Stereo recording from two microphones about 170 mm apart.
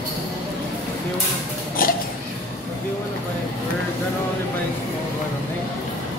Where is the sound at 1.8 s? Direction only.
55° left (ahead or behind).